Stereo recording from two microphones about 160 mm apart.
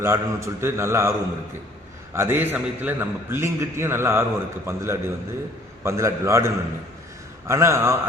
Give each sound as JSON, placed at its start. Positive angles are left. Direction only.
{"t": 0.0, "sound": "a man's voice", "side_deg": -15}
{"t": 2.1, "sound": "a man's voice", "side_deg": -15}